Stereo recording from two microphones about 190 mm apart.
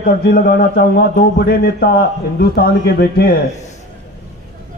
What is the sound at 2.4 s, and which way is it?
A man's voice, 55° left (ahead or behind).